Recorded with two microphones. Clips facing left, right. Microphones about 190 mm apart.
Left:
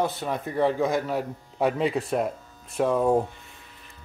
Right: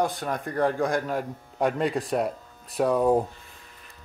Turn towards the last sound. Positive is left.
turn(degrees=0)  # may be behind; listen again after turning